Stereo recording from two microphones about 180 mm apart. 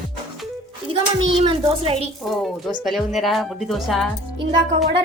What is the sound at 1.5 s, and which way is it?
Speech, 30° right (ahead or behind).